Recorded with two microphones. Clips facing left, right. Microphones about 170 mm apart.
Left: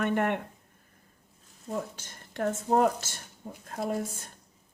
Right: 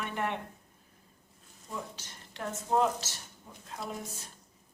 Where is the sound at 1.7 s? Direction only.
50° left (ahead or behind).